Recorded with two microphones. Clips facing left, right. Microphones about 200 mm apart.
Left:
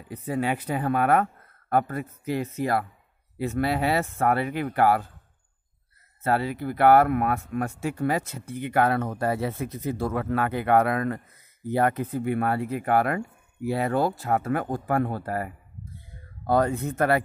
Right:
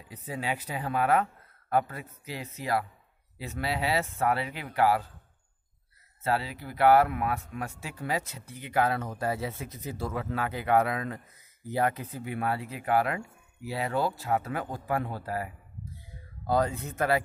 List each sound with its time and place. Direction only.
0.1 s speech: 55° left (ahead or behind)
6.2 s speech: 50° left (ahead or behind)